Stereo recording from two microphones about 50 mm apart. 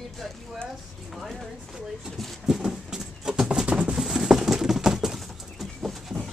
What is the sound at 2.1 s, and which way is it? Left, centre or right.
Speech, centre.